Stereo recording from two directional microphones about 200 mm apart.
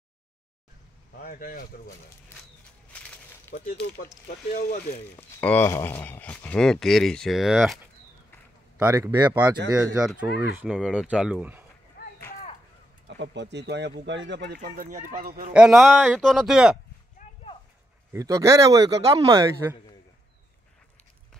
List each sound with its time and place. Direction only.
1.2 s speech: 45° left (ahead or behind)
3.5 s speech: 10° left (ahead or behind)
4.5 s speech: 45° left (ahead or behind)
5.1 s speech: 10° left (ahead or behind)
8.7 s speech: 10° right (ahead or behind)
12.0 s a sound: 50° left (ahead or behind)
13.2 s speech: 60° right (ahead or behind)
14.6 s speech: 40° right (ahead or behind)
15.5 s speech: 5° right (ahead or behind)
17.2 s a sound: 40° left (ahead or behind)
18.1 s speech: 15° right (ahead or behind)